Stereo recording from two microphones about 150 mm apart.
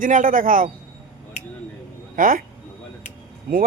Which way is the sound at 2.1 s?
65° right (ahead or behind).